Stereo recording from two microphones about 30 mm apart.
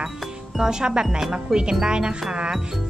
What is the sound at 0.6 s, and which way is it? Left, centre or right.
A child's voice, right.